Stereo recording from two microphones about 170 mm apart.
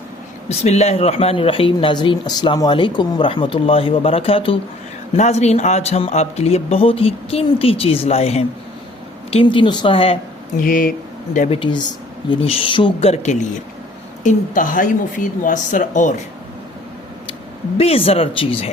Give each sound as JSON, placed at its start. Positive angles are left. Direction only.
{"t": 0.4, "sound": "speech", "side_deg": 40}
{"t": 10.6, "sound": "speech", "side_deg": 55}
{"t": 11.3, "sound": "speech", "side_deg": 35}
{"t": 17.7, "sound": "speech", "side_deg": 35}